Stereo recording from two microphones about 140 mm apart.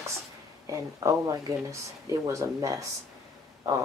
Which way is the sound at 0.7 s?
25° right (ahead or behind).